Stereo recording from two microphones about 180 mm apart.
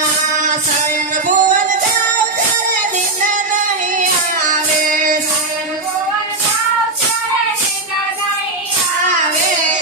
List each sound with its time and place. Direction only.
1.1 s music: 45° right (ahead or behind)
3.5 s music: 45° right (ahead or behind)